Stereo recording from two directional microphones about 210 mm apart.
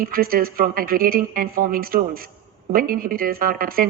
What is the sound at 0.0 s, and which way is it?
Speech, 45° right (ahead or behind).